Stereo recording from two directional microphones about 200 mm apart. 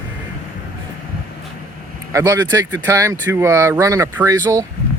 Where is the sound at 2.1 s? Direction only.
15° right (ahead or behind).